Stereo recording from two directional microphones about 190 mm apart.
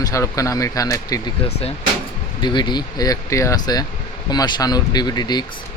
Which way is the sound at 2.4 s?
25° left (ahead or behind).